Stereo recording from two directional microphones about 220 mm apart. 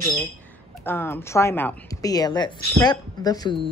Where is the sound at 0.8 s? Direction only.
10° left (ahead or behind).